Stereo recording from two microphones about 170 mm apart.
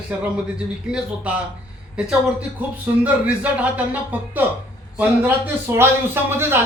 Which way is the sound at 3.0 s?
10° right (ahead or behind).